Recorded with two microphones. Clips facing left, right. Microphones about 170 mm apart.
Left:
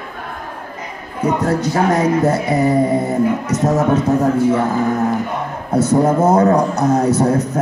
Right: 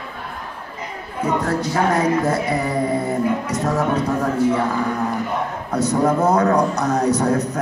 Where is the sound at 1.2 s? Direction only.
20° left (ahead or behind).